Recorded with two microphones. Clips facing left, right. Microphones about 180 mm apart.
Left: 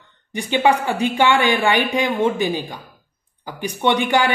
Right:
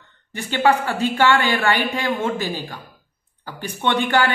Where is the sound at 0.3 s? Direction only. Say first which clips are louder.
Left 1 dB; 15° left (ahead or behind).